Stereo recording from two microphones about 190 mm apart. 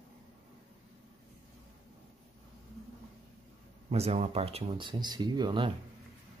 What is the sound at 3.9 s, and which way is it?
Speech, 30° right (ahead or behind).